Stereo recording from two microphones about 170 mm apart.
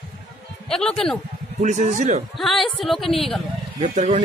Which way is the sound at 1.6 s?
45° right (ahead or behind).